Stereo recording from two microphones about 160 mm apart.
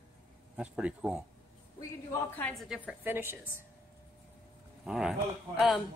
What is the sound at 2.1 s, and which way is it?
Speech, 10° left (ahead or behind).